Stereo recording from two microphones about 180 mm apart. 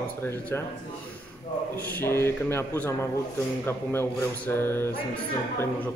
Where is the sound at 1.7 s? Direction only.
15° left (ahead or behind).